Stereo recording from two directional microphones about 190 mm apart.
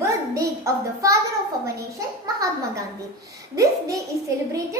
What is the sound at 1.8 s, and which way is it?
Speech, 15° right (ahead or behind).